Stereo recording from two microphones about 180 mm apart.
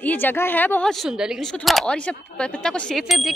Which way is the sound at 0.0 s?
10° left (ahead or behind).